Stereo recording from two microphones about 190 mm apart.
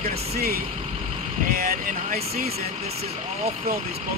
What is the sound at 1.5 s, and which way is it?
Speech, 50° right (ahead or behind).